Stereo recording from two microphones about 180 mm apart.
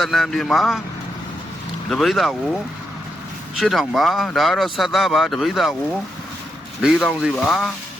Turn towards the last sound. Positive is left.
turn(degrees=0)  # may be behind; listen again after turning